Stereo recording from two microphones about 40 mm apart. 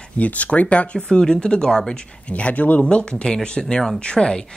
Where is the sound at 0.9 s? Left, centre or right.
Centre; by 2.9 s left.